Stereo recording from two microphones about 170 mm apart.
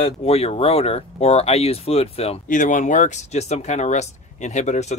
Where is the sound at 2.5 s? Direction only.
50° left (ahead or behind).